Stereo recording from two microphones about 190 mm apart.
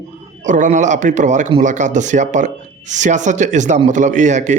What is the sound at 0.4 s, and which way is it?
A man's voice, 40° right (ahead or behind).